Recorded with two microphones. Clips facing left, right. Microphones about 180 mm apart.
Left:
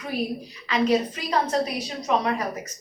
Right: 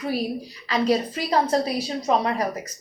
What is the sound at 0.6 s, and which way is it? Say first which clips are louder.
A woman's voice: even; 35° right (ahead or behind).